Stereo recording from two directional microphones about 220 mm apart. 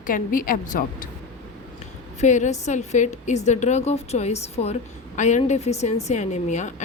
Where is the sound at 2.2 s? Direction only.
35° left (ahead or behind).